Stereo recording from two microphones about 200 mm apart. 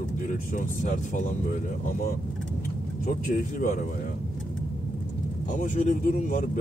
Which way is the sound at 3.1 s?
40° left (ahead or behind).